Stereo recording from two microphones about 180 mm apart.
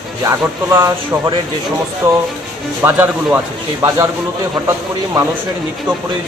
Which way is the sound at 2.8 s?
10° right (ahead or behind).